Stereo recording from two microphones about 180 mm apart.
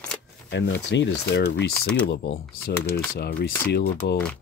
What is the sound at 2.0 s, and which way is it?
Speech, 80° left.